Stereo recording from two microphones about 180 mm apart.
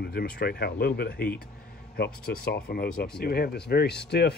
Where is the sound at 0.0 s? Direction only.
60° left (ahead or behind).